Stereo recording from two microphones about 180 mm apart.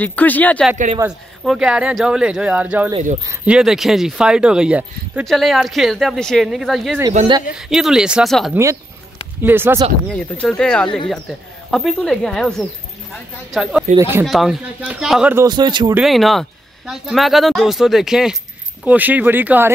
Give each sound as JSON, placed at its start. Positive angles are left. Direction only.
{"t": 0.0, "sound": "speech", "side_deg": 10}
{"t": 1.0, "sound": "speech", "side_deg": -15}
{"t": 1.4, "sound": "speech", "side_deg": 0}
{"t": 9.4, "sound": "speech", "side_deg": -10}
{"t": 10.1, "sound": "speech", "side_deg": 5}
{"t": 13.9, "sound": "speech", "side_deg": -15}
{"t": 14.2, "sound": "speech", "side_deg": 0}
{"t": 15.3, "sound": "speech", "side_deg": -25}
{"t": 15.9, "sound": "speech", "side_deg": 0}